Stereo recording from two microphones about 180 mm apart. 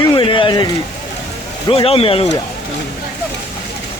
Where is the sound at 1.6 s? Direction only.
30° left (ahead or behind).